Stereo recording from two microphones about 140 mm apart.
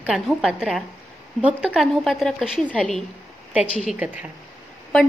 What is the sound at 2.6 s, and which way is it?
Speech, 5° left (ahead or behind).